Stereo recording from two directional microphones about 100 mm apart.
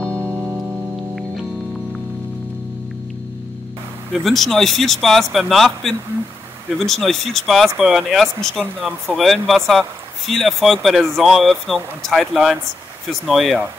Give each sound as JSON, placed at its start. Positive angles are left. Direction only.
{"t": 0.2, "sound": "music", "side_deg": -25}
{"t": 0.6, "sound": "music", "side_deg": 0}
{"t": 4.1, "sound": "speech", "side_deg": 0}